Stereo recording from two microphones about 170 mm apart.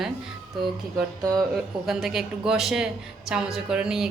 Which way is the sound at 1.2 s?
20° right (ahead or behind).